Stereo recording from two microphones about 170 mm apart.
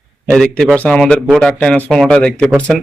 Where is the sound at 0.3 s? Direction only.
5° left (ahead or behind).